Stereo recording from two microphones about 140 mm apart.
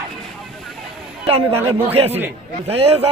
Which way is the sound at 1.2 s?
45° right (ahead or behind).